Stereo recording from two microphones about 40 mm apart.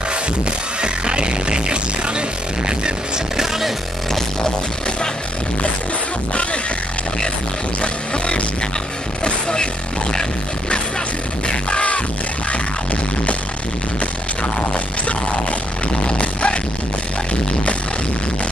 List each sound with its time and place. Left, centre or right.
0.1 s music: right
3.3 s music: centre
7.8 s music: left
11.4 s music: left
14.4 s music: left